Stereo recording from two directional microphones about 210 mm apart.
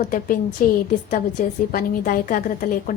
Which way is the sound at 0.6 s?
45° left (ahead or behind).